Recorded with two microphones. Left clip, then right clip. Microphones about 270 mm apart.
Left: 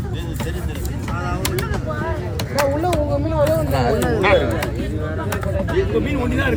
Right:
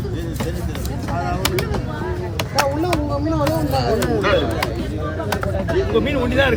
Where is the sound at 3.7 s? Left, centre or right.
Centre.